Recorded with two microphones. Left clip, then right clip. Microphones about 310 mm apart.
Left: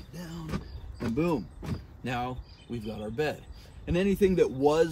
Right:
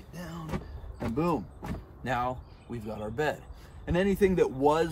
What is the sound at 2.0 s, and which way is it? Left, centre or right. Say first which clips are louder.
A man's voice: right 3 dB; centre.